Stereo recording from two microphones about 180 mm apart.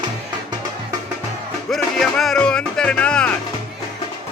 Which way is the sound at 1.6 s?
Centre (ahead or behind).